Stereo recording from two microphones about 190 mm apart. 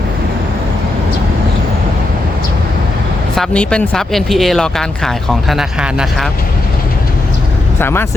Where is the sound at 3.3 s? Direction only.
5° left (ahead or behind).